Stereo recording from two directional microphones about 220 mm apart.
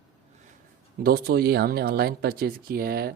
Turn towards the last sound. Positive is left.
turn(degrees=-45)  # may be behind; listen again after turning